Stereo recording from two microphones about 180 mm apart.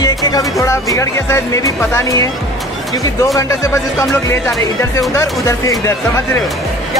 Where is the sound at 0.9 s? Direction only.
15° left (ahead or behind).